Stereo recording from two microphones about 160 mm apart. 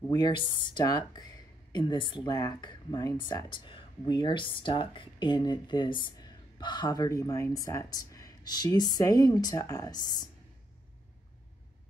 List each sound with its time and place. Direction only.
0.1 s speech: 30° left (ahead or behind)